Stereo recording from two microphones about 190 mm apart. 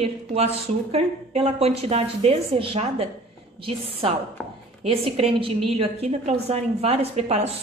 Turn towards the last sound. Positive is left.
turn(degrees=-35)  # may be behind; listen again after turning